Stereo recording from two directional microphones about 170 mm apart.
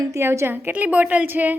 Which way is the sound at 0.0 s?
15° right (ahead or behind).